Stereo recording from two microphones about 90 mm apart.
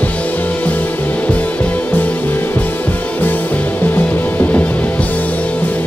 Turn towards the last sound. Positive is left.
turn(degrees=20)  # may be behind; listen again after turning